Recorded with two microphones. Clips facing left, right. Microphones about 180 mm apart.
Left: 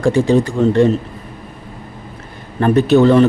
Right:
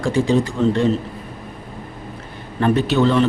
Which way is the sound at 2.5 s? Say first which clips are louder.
Left 6 dB; 45° left (ahead or behind).